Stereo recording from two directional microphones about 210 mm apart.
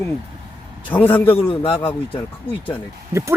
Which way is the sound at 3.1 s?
15° right (ahead or behind).